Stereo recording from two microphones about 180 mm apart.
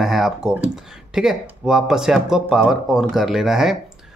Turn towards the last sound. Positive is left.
turn(degrees=0)  # may be behind; listen again after turning